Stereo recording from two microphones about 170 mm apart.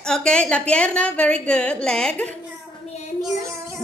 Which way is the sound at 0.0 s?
5° left (ahead or behind).